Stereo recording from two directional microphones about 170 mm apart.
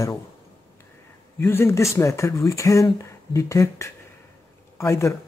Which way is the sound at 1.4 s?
15° left (ahead or behind).